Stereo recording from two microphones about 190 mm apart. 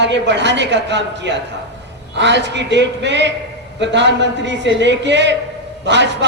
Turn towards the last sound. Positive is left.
turn(degrees=-65)  # may be behind; listen again after turning